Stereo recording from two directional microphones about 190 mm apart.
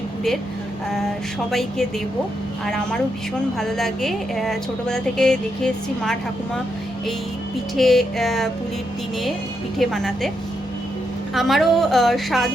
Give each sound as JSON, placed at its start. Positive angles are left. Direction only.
{"t": 2.6, "sound": "a woman's voice", "side_deg": 5}
{"t": 7.8, "sound": "a woman's voice", "side_deg": 0}
{"t": 9.7, "sound": "a woman's voice", "side_deg": 0}
{"t": 11.3, "sound": "a woman's voice", "side_deg": 0}